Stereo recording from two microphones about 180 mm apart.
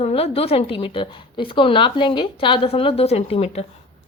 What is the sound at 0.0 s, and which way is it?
A woman's voice, 35° left (ahead or behind).